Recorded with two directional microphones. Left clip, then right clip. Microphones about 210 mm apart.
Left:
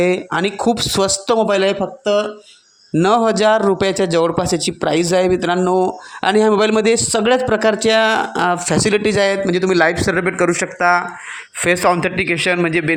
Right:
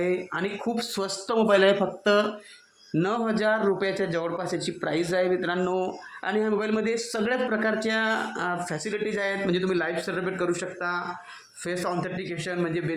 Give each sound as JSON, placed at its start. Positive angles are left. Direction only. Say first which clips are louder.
{"t": 0.0, "sound": "a man's voice", "louder": "left 11 dB", "side_deg": 40}
{"t": 1.5, "sound": "speech", "louder": "left 4 dB", "side_deg": 20}
{"t": 3.0, "sound": "a man's voice", "louder": "left 12 dB", "side_deg": 35}